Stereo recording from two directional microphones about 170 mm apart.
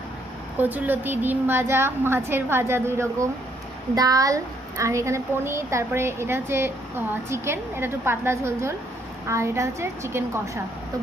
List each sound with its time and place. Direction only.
0.6 s a woman's voice: 10° right (ahead or behind)